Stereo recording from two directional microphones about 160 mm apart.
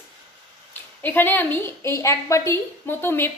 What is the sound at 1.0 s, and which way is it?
A woman's voice, 10° left (ahead or behind).